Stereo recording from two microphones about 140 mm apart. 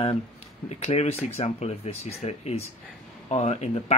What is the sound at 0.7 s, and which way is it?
Speech, 50° left (ahead or behind).